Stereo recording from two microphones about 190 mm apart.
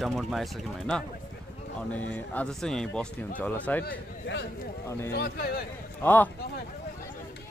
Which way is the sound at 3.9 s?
65° left (ahead or behind).